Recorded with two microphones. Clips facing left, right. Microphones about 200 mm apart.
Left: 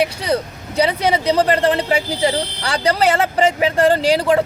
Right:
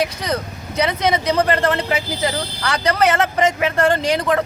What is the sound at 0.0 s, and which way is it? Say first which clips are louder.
Speech: left 3 dB; 30° left (ahead or behind).